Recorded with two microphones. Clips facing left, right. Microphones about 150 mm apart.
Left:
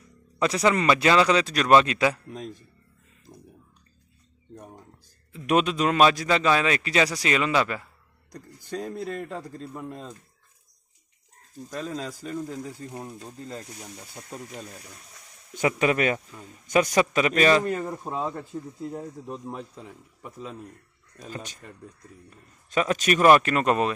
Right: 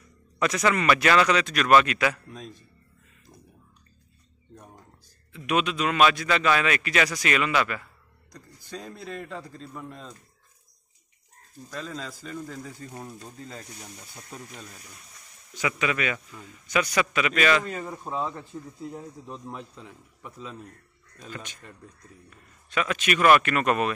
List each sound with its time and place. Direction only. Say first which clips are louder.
0.4 s a man's voice: left 2 dB; 30° left (ahead or behind)
3.3 s a sound: left 4 dB; 25° left (ahead or behind)
5.3 s a man's voice: left 3 dB; 40° left (ahead or behind)
8.3 s a man's voice: left 5 dB; 50° left (ahead or behind)
11.7 s a man's voice: left 4 dB; 45° left (ahead or behind)
12.4 s speech: left 4 dB; 15° left (ahead or behind)
15.5 s a man's voice: left 5 dB; 45° left (ahead or behind)
16.3 s a man's voice: left 1 dB; 30° left (ahead or behind)
16.6 s speech: left 4 dB; 45° left (ahead or behind)
17.8 s speech: left 1 dB; 10° left (ahead or behind)
20.2 s speech: left 2 dB; 40° left (ahead or behind)
22.7 s speech: left 3 dB; 40° left (ahead or behind)